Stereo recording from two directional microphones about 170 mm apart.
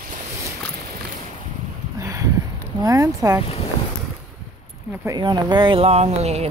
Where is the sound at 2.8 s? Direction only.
20° right (ahead or behind).